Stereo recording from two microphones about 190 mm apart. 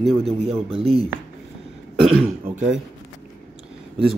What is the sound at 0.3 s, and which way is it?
Speech, 30° right (ahead or behind).